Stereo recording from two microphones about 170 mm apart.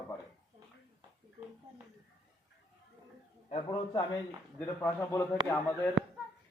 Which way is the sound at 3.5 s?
30° left (ahead or behind).